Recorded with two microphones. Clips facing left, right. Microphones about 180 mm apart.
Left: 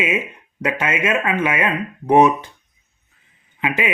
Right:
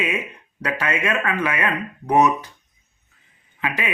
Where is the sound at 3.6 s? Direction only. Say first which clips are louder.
Left 5 dB; 20° left (ahead or behind).